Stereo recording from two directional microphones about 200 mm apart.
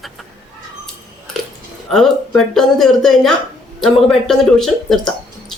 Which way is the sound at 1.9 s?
Centre (ahead or behind).